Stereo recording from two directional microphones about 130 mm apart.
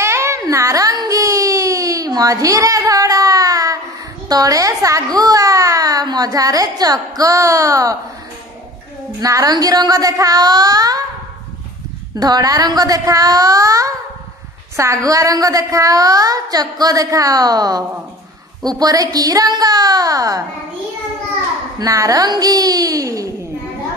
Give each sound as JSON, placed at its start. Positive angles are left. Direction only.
{"t": 0.0, "sound": "a sound", "side_deg": -20}
{"t": 4.3, "sound": "a child's voice", "side_deg": -30}
{"t": 9.2, "sound": "a child's voice", "side_deg": -25}
{"t": 12.2, "sound": "a child's voice", "side_deg": -30}
{"t": 21.7, "sound": "a child's voice", "side_deg": -25}